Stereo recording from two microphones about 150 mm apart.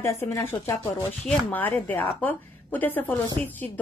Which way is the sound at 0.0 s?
15° left (ahead or behind).